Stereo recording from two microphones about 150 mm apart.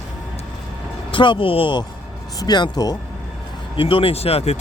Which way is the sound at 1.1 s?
35° left (ahead or behind).